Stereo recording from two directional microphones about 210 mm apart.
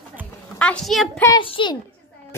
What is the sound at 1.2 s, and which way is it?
Speech, 20° left (ahead or behind).